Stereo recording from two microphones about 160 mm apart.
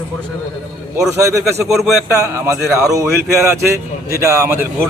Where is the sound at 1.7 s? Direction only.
Centre (ahead or behind).